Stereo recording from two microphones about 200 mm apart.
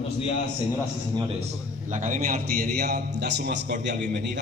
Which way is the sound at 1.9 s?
35° right (ahead or behind).